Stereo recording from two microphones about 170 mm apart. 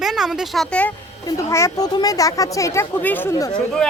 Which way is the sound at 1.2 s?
20° left (ahead or behind).